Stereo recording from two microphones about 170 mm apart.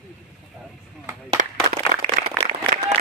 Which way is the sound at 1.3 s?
35° right (ahead or behind).